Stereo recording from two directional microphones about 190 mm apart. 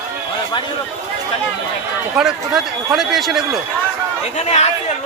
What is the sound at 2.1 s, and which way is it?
Speech, 5° right (ahead or behind).